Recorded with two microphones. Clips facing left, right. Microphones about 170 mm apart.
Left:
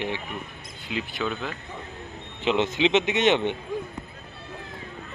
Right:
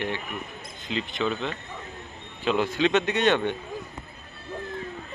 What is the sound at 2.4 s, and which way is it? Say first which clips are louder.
Speech: left 1 dB; 20° left (ahead or behind).